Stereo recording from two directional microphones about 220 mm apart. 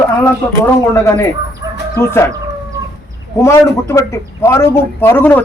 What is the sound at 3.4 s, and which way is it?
A man's voice, 15° left (ahead or behind).